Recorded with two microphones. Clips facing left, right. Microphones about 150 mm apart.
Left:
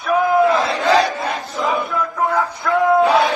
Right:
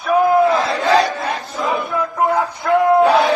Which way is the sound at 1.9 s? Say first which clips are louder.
Right 2 dB; 20° right (ahead or behind).